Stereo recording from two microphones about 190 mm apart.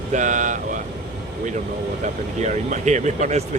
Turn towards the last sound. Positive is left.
turn(degrees=-40)  # may be behind; listen again after turning